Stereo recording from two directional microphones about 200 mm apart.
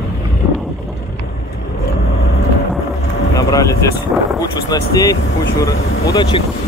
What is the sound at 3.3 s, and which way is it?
Speech, 15° left (ahead or behind).